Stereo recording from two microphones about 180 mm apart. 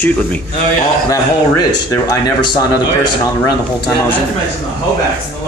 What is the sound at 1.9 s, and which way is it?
Speech, 20° left (ahead or behind).